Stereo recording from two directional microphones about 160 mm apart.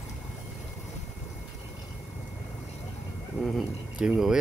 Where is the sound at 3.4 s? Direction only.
Centre (ahead or behind).